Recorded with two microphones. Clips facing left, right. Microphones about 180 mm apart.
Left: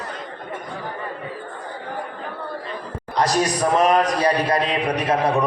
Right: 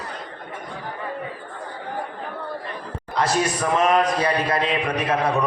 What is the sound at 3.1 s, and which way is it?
Speech, 40° left (ahead or behind).